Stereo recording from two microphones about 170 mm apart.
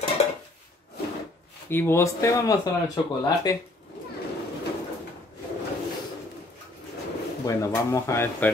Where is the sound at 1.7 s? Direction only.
15° left (ahead or behind).